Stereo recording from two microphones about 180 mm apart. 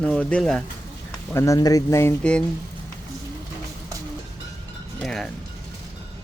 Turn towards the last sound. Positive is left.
turn(degrees=0)  # may be behind; listen again after turning